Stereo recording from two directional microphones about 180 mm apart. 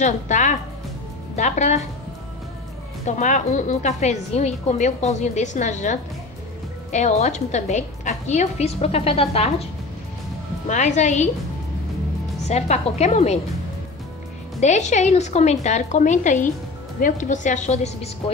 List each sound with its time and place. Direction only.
0.0 s a woman's voice: 40° left (ahead or behind)
3.1 s a woman's voice: 45° left (ahead or behind)
10.7 s a woman's voice: 40° left (ahead or behind)
12.4 s a woman's voice: 40° left (ahead or behind)
14.6 s a woman's voice: 40° left (ahead or behind)